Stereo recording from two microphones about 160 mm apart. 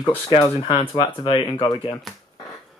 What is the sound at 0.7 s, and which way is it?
Speech, 30° left (ahead or behind).